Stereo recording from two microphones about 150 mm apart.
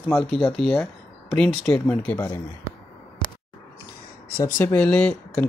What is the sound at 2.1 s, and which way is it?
Speech, 15° left (ahead or behind).